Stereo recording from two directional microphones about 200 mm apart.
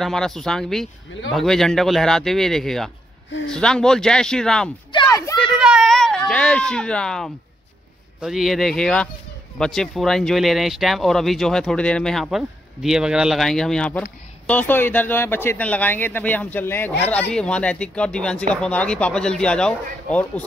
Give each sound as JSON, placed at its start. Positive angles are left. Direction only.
{"t": 0.0, "sound": "speech", "side_deg": 0}
{"t": 4.9, "sound": "a sound", "side_deg": 20}
{"t": 5.6, "sound": "baby cry", "side_deg": -5}
{"t": 8.2, "sound": "speech", "side_deg": 0}